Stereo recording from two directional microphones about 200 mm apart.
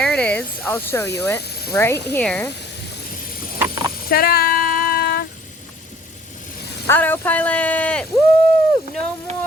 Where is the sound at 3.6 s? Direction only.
15° right (ahead or behind).